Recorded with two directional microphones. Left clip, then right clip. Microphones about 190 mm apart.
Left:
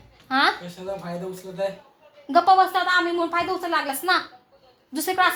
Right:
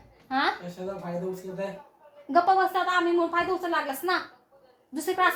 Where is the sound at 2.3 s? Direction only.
25° left (ahead or behind).